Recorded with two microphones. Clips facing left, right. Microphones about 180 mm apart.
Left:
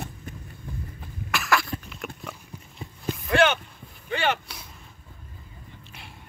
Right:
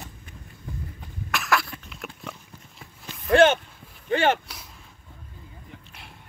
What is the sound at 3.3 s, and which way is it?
Speech, 40° right (ahead or behind).